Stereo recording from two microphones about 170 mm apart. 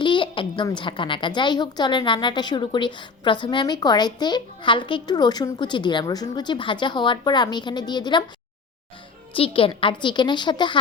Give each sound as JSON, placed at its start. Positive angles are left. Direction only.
{"t": 0.0, "sound": "a sound", "side_deg": 30}
{"t": 0.8, "sound": "a woman's voice", "side_deg": 30}
{"t": 9.3, "sound": "a woman's voice", "side_deg": 30}